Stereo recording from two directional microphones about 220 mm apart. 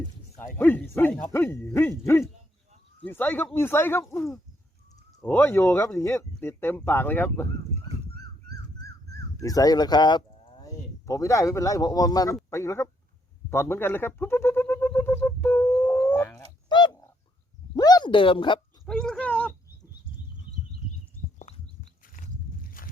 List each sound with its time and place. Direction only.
0.3 s speech: 10° left (ahead or behind)
5.2 s speech: 10° left (ahead or behind)
8.1 s dog: 45° right (ahead or behind)
9.4 s speech: 15° left (ahead or behind)
13.5 s a sound: 10° left (ahead or behind)
17.7 s speech: 15° left (ahead or behind)
18.9 s gargling: 5° left (ahead or behind)
21.3 s a sound: 35° left (ahead or behind)